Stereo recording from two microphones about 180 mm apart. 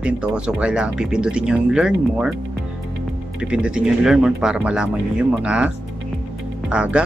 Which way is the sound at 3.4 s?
5° right (ahead or behind).